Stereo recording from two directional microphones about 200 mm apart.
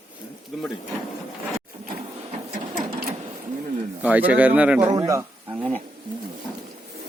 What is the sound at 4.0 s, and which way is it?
Speech, 5° right (ahead or behind).